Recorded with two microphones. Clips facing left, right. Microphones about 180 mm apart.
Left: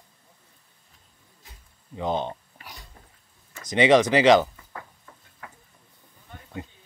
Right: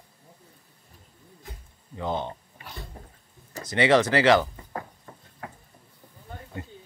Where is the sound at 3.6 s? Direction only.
20° left (ahead or behind).